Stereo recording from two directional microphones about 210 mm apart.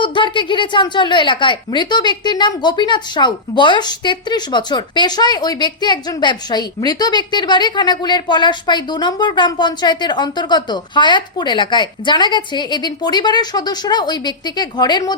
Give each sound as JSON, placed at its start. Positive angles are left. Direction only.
{"t": 0.0, "sound": "a woman's voice", "side_deg": 20}